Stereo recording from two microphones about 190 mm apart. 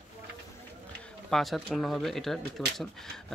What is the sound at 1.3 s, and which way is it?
Speech, centre (ahead or behind).